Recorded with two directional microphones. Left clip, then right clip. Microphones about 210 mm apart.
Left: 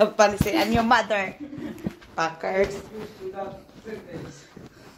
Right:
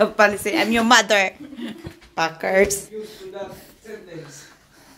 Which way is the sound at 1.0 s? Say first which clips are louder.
Right 7 dB; 65° right (ahead or behind).